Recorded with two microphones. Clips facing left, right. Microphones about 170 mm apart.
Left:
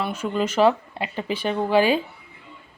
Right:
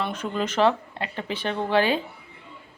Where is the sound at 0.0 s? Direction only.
10° left (ahead or behind).